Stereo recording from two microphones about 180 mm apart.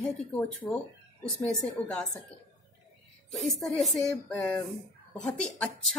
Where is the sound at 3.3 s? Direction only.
Centre (ahead or behind).